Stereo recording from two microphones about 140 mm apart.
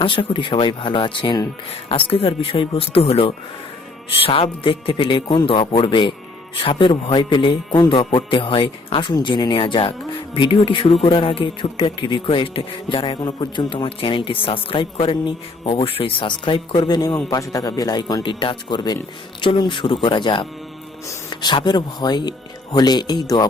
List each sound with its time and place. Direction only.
0.0 s speech: 35° left (ahead or behind)